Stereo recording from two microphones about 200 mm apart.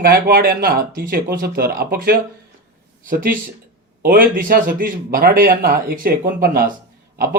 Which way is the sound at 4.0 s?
45° right (ahead or behind).